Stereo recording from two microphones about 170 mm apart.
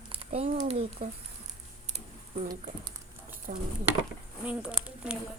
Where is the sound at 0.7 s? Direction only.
40° right (ahead or behind).